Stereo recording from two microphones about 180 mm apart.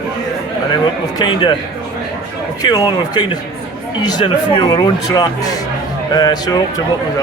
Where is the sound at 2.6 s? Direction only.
25° left (ahead or behind).